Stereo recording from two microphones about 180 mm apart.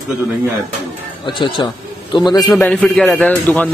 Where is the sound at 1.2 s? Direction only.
25° left (ahead or behind).